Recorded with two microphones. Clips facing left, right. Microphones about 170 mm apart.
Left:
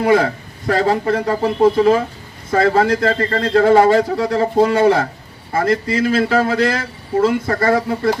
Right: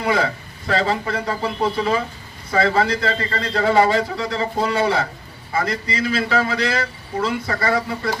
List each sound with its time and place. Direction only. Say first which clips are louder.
0.0 s a man's voice: left 6 dB; 45° left (ahead or behind)